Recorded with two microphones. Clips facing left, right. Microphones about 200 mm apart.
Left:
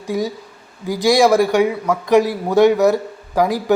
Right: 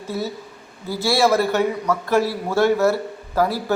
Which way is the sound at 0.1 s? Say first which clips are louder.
Left 5 dB; 15° left (ahead or behind).